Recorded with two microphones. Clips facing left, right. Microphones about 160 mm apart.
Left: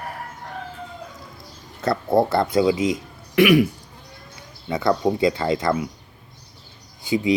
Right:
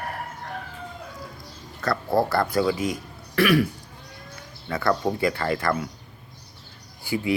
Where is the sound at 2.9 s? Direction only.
20° left (ahead or behind).